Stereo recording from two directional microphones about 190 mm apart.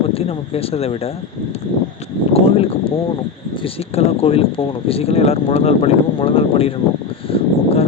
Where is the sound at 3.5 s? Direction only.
30° left (ahead or behind).